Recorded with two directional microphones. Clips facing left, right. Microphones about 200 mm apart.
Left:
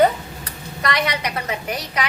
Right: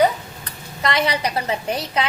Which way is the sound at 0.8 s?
25° right (ahead or behind).